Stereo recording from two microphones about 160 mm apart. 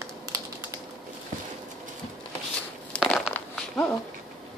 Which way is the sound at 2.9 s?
Centre (ahead or behind).